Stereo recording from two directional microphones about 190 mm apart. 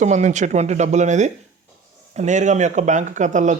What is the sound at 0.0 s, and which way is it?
Speech, 40° right (ahead or behind).